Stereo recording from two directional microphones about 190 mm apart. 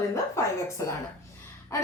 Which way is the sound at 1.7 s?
15° left (ahead or behind).